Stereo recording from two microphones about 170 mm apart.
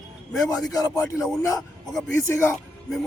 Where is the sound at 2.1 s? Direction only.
15° left (ahead or behind).